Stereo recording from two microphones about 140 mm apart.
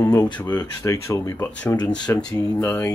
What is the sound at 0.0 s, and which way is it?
Speech, 30° left (ahead or behind).